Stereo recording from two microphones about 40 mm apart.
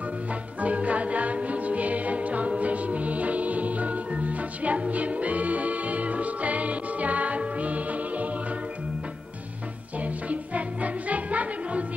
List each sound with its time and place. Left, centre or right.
0.3 s music: right
9.9 s music: right